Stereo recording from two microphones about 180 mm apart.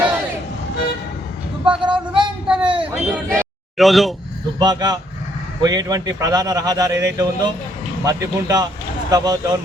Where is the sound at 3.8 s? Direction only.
Centre (ahead or behind).